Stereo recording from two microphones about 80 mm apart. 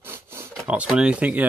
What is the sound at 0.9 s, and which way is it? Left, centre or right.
Speech, centre.